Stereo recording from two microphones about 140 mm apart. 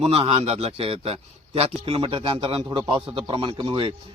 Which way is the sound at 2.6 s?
25° right (ahead or behind).